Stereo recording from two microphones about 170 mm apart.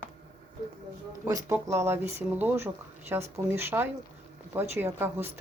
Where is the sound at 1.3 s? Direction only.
20° right (ahead or behind).